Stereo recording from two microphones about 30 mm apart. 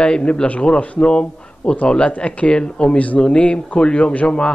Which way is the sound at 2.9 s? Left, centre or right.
Left.